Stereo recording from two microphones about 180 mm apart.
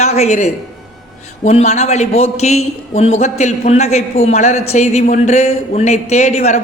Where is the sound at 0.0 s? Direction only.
35° left (ahead or behind).